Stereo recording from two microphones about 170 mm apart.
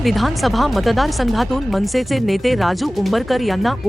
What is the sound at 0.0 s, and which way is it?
Speech, centre (ahead or behind).